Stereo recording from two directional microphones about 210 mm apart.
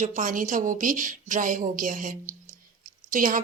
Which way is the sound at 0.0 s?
35° right (ahead or behind).